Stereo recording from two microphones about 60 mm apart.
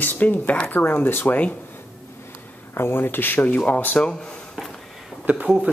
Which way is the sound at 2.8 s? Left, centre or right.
Left.